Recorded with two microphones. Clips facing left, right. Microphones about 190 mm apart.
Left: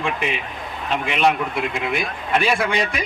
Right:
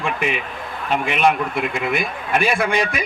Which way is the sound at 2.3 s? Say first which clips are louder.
Right 1 dB; 50° right (ahead or behind).